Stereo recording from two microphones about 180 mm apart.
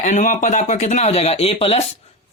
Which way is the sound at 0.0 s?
45° left (ahead or behind).